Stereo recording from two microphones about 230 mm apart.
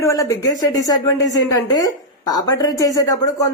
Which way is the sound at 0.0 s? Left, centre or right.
Centre.